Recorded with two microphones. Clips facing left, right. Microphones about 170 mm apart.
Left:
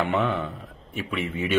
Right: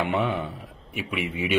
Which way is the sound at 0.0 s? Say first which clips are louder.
Left 1 dB; 15° right (ahead or behind).